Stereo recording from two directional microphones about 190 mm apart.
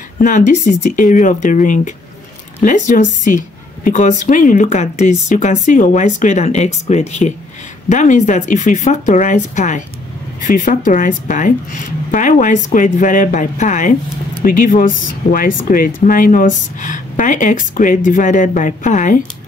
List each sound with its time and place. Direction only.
0.2 s speech: 40° left (ahead or behind)